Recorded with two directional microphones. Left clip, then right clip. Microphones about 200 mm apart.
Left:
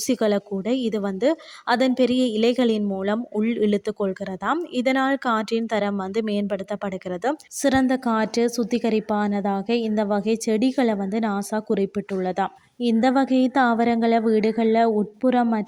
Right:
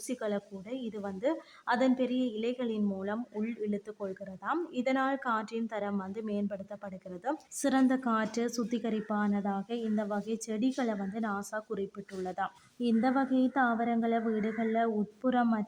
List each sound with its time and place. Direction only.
0.1 s speech: 35° left (ahead or behind)